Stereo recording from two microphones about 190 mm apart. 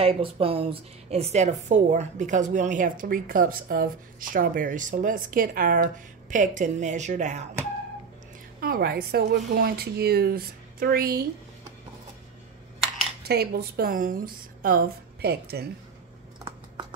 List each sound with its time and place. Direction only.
0.0 s a woman's voice: 30° right (ahead or behind)
8.5 s a woman's voice: 50° right (ahead or behind)
13.2 s a woman's voice: 55° right (ahead or behind)